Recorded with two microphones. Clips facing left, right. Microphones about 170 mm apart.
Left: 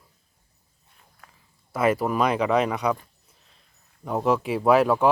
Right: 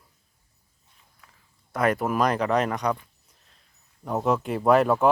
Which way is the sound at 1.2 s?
60° left (ahead or behind).